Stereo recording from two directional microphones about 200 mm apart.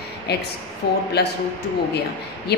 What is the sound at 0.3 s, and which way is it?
A woman's voice, 55° left (ahead or behind).